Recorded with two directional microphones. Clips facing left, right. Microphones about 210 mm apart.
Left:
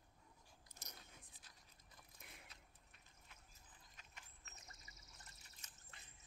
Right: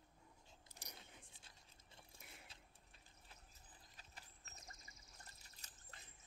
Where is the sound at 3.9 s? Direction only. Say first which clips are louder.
Right 2 dB; 35° right (ahead or behind).